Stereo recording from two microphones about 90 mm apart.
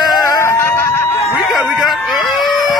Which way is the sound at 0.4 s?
30° left (ahead or behind).